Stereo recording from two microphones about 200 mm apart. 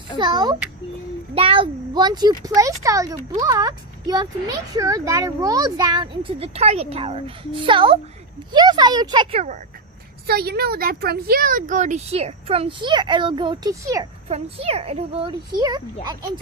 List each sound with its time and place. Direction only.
0.2 s speech: 20° right (ahead or behind)
10.2 s speech: 50° right (ahead or behind); by 14.1 s 15° right (ahead or behind)
14.3 s speech: 30° right (ahead or behind)